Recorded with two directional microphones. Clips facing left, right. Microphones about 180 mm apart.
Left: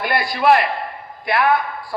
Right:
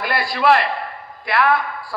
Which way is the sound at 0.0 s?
20° left (ahead or behind).